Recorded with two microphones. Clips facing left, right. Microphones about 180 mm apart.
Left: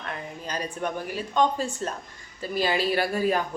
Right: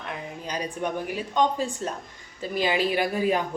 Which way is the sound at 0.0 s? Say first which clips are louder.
Right 1 dB; 10° right (ahead or behind).